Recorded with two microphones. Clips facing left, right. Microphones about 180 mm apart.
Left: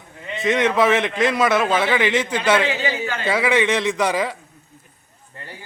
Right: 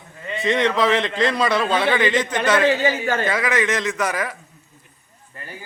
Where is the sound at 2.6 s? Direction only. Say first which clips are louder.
Right 5 dB; 45° right (ahead or behind).